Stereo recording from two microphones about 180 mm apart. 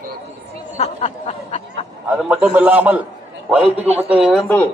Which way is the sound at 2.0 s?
5° right (ahead or behind).